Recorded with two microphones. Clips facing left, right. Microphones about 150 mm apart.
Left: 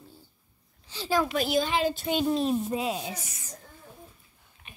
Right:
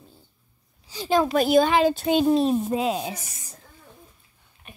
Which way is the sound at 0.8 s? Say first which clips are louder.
Right 3 dB; 15° right (ahead or behind).